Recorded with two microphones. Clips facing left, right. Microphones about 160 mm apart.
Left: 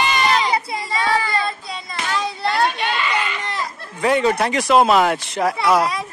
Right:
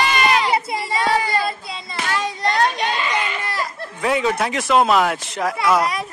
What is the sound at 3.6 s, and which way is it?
Speech, centre (ahead or behind).